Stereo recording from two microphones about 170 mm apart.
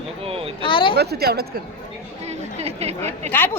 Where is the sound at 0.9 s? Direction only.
70° right (ahead or behind).